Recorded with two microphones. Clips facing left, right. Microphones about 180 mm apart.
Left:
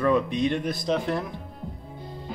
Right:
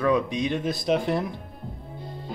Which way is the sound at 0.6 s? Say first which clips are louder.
Right 2 dB; 20° right (ahead or behind).